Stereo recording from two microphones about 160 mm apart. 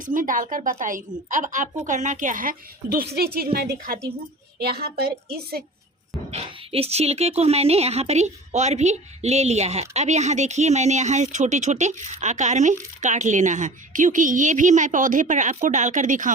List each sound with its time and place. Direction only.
0.0 s speech: 55° right (ahead or behind)
3.2 s a woman's voice: 70° right (ahead or behind)
6.3 s speech: 35° right (ahead or behind); by 16.3 s 55° right (ahead or behind)